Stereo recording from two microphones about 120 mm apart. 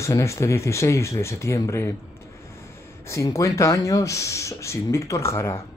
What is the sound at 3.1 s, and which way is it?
Speech, 25° left (ahead or behind).